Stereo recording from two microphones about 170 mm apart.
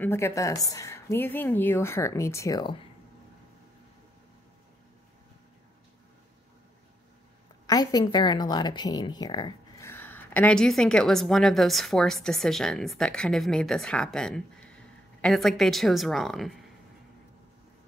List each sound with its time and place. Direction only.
0.0 s a woman's voice: 15° left (ahead or behind)
7.6 s speech: 20° left (ahead or behind); by 16.6 s centre (ahead or behind)